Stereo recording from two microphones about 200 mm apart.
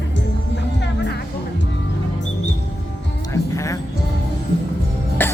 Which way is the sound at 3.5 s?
15° left (ahead or behind).